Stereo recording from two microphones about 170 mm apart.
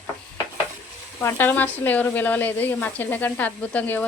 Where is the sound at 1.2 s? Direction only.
10° left (ahead or behind).